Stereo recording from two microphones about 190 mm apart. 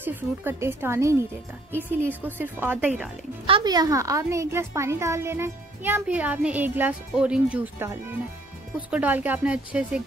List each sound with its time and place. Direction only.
0.0 s a woman's voice: 10° right (ahead or behind)
3.4 s a woman's voice: 25° right (ahead or behind); by 10.0 s 5° right (ahead or behind)